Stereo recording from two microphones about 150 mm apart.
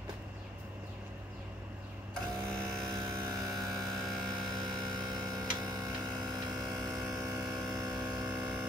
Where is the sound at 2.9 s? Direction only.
25° right (ahead or behind).